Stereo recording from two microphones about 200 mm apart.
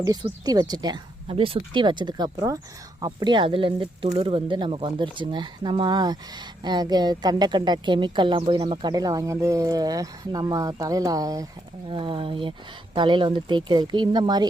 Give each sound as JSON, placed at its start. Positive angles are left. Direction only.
{"t": 0.0, "sound": "speech", "side_deg": -20}